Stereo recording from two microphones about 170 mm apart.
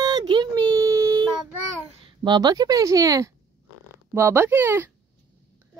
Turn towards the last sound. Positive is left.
turn(degrees=-15)  # may be behind; listen again after turning